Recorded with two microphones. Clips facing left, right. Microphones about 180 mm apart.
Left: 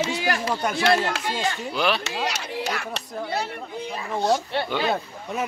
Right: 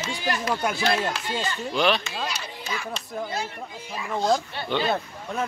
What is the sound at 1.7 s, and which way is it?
Speech, 5° left (ahead or behind).